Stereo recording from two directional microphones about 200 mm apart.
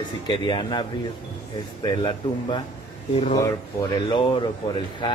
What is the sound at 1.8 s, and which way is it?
Speech, 20° left (ahead or behind).